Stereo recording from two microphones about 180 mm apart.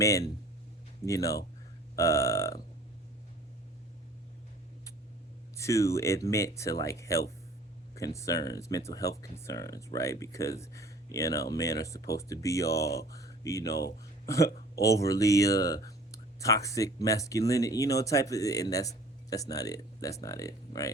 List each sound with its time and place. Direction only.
0.0 s speech: 20° left (ahead or behind)
5.5 s speech: 15° left (ahead or behind)